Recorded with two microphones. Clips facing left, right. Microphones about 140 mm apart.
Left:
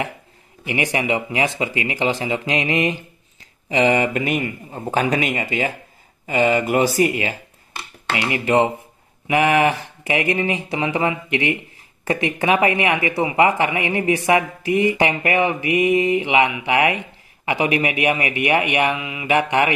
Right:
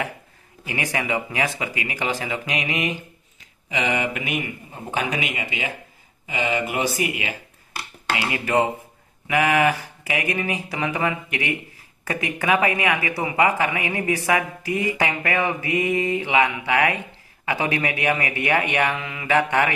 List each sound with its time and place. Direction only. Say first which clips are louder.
0.7 s speech: left 5 dB; 20° left (ahead or behind)
8.3 s speech: left 4 dB; 20° left (ahead or behind)